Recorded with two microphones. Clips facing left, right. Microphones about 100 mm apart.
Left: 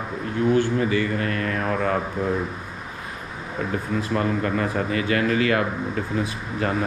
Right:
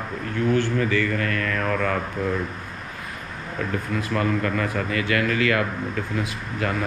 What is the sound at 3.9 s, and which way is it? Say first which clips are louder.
Speech: even; 25° left (ahead or behind).